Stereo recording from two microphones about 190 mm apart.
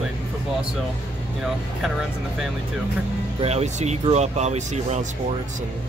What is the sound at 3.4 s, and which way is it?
Speech, 35° right (ahead or behind).